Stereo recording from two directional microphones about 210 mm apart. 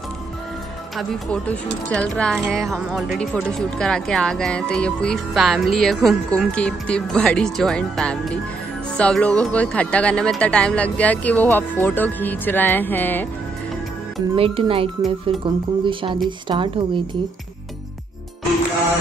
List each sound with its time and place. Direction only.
0.9 s speech: 5° left (ahead or behind)
14.3 s speech: 25° right (ahead or behind)